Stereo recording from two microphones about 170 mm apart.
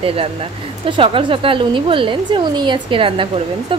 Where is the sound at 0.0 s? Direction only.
35° right (ahead or behind).